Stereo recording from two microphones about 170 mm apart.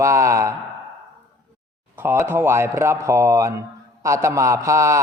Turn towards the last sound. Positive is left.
turn(degrees=-15)  # may be behind; listen again after turning